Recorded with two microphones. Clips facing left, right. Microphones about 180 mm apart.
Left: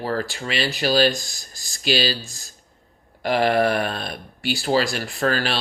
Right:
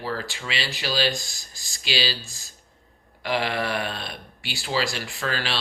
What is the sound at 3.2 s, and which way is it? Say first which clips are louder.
Speech: left 7 dB; 45° left (ahead or behind).